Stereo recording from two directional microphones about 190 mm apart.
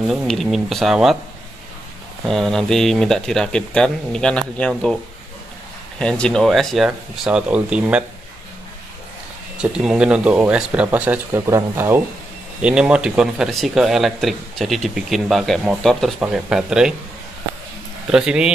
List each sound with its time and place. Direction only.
0.1 s speech: centre (ahead or behind)
2.2 s speech: centre (ahead or behind)
5.9 s speech: 5° left (ahead or behind)
9.6 s speech: 5° right (ahead or behind)
18.1 s speech: 5° right (ahead or behind)